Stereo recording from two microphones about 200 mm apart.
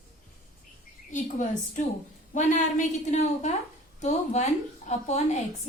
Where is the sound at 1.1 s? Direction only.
40° left (ahead or behind).